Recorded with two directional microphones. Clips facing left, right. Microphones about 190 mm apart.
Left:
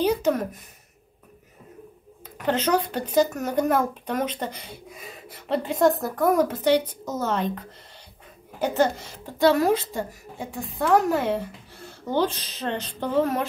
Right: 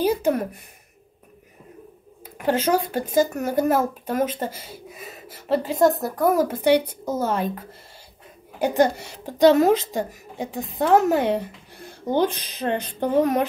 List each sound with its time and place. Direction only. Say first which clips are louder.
0.0 s a sound: right 1 dB; 10° right (ahead or behind)
2.3 s a woman's voice: right 2 dB; 10° right (ahead or behind)
5.3 s a woman's voice: right 3 dB; 5° right (ahead or behind)